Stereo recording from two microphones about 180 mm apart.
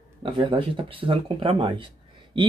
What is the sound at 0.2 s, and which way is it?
Speech, 30° right (ahead or behind).